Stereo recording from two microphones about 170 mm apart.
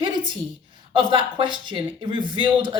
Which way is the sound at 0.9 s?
30° right (ahead or behind).